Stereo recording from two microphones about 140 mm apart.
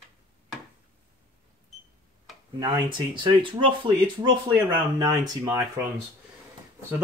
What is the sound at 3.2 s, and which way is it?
Speech, 35° right (ahead or behind).